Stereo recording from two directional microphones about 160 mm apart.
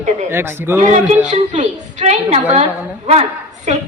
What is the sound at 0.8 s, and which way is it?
A woman's voice, 50° right (ahead or behind).